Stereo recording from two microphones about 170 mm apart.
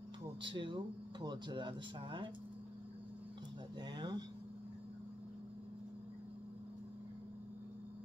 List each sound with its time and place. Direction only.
0.4 s speech: 30° right (ahead or behind)
3.8 s speech: 25° right (ahead or behind)